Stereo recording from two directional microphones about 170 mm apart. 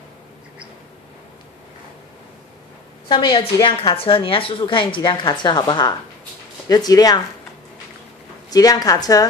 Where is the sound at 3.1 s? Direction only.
25° left (ahead or behind).